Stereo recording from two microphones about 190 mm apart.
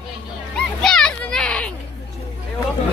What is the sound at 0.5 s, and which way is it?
Children playing, 5° left (ahead or behind).